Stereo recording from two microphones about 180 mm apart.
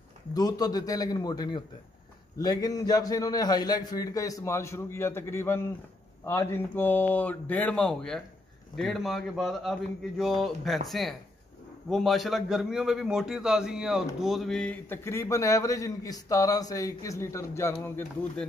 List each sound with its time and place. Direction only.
0.3 s a man's voice: 20° left (ahead or behind)